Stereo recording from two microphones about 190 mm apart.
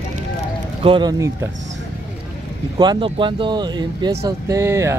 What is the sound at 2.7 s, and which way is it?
Speech, 25° right (ahead or behind).